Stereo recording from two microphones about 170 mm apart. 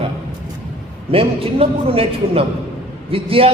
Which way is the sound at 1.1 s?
35° right (ahead or behind).